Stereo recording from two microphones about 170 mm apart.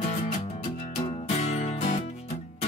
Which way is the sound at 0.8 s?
35° left (ahead or behind).